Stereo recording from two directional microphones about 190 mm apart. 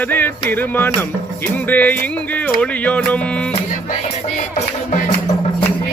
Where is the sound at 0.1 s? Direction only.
10° left (ahead or behind).